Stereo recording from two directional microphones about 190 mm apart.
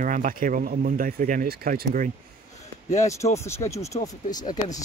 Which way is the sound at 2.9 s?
15° left (ahead or behind).